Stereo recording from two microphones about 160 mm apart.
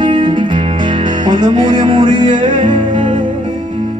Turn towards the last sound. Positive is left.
turn(degrees=-30)  # may be behind; listen again after turning